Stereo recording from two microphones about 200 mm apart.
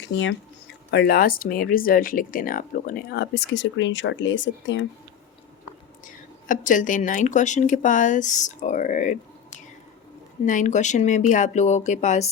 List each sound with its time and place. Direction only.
0.0 s speech: 65° left (ahead or behind)
0.9 s speech: 50° left (ahead or behind)
6.1 s speech: 40° left (ahead or behind)